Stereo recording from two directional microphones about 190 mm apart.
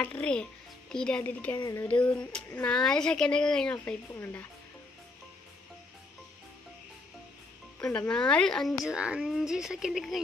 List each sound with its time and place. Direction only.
0.0 s speech: 5° left (ahead or behind)
1.9 s speech: 5° left (ahead or behind)
7.8 s speech: 5° left (ahead or behind)